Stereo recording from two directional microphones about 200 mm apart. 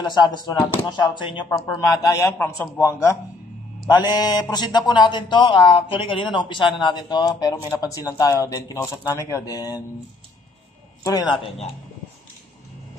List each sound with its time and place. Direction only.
0.0 s a man's voice: 20° left (ahead or behind)